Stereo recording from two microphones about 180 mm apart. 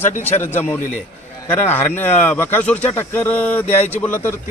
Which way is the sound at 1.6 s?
10° left (ahead or behind).